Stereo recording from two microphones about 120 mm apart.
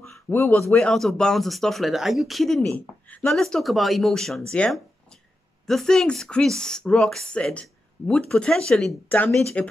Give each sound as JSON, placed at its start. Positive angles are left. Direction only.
{"t": 0.3, "sound": "speech", "side_deg": 15}
{"t": 0.7, "sound": "speech", "side_deg": 5}